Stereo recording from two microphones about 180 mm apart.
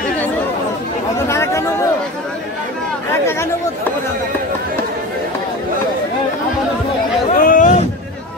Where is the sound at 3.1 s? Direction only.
15° left (ahead or behind).